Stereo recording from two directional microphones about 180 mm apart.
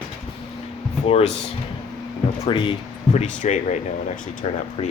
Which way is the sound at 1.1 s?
35° left (ahead or behind).